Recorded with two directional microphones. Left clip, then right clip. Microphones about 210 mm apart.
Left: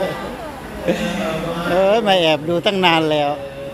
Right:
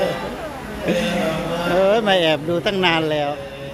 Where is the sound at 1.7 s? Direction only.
15° left (ahead or behind).